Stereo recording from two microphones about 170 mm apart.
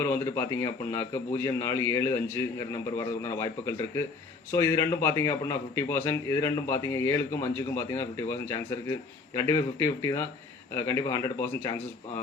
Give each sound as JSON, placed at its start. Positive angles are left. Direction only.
{"t": 0.0, "sound": "a man's voice", "side_deg": 15}